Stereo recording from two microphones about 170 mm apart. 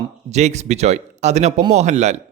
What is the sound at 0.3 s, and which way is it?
Speech, 40° right (ahead or behind).